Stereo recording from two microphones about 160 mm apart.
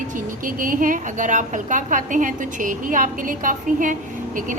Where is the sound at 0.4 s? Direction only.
60° right (ahead or behind).